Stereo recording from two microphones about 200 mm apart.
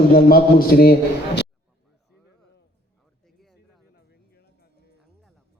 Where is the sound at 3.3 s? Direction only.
Centre (ahead or behind).